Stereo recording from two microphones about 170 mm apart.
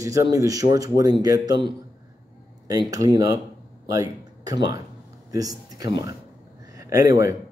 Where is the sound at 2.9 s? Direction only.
20° right (ahead or behind).